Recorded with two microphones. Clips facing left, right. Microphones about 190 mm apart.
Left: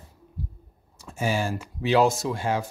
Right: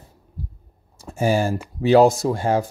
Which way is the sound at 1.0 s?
40° right (ahead or behind).